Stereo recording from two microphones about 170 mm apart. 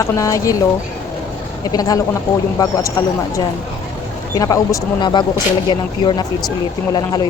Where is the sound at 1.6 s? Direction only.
20° left (ahead or behind).